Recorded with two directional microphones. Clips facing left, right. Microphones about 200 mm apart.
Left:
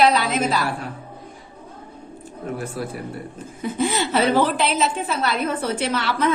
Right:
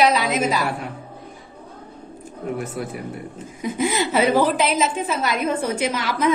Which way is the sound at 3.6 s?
10° right (ahead or behind).